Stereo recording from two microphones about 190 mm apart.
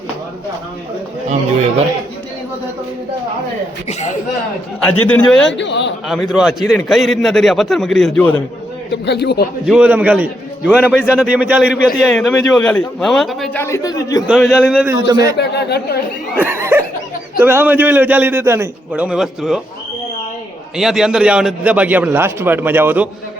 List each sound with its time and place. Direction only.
4.8 s a man's voice: 5° left (ahead or behind)
5.5 s a man's voice: 70° left (ahead or behind)
6.1 s a man's voice: centre (ahead or behind)
8.9 s speech: 60° left (ahead or behind)
9.6 s a man's voice: 5° right (ahead or behind)
13.6 s a man's voice: 15° left (ahead or behind)
14.3 s a man's voice: centre (ahead or behind)
14.8 s a man's voice: 20° right (ahead or behind)
15.4 s speech: 60° left (ahead or behind)
16.4 s a man's voice: 15° right (ahead or behind)
20.7 s a man's voice: centre (ahead or behind)